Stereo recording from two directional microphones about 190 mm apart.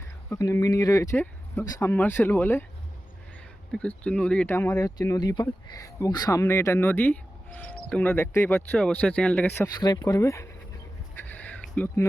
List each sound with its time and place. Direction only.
0.3 s speech: 15° left (ahead or behind)
3.7 s speech: 5° left (ahead or behind)
9.8 s speech: 20° left (ahead or behind)
11.1 s a sound: 10° left (ahead or behind)